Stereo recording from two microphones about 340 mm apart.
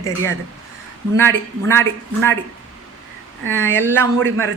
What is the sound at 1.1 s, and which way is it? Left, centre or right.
Speech, centre.